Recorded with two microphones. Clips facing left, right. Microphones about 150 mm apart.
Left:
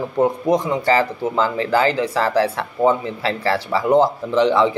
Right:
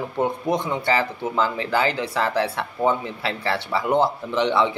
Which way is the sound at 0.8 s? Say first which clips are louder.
Left 5 dB; 40° left (ahead or behind).